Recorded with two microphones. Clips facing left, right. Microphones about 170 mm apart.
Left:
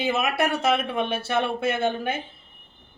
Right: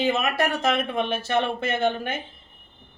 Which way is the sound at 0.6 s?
5° left (ahead or behind).